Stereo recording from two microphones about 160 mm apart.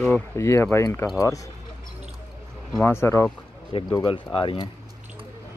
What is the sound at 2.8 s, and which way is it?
Speech, 15° left (ahead or behind).